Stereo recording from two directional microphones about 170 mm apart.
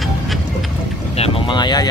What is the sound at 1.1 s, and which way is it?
Speech, 35° left (ahead or behind).